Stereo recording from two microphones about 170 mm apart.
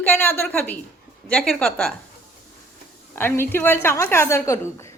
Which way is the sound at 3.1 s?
15° left (ahead or behind).